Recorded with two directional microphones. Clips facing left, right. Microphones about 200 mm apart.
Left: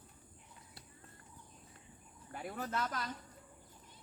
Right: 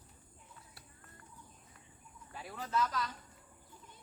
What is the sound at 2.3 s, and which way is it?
Speech, 55° left (ahead or behind).